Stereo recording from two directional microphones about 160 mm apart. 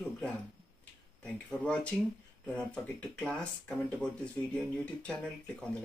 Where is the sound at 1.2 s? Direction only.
5° left (ahead or behind).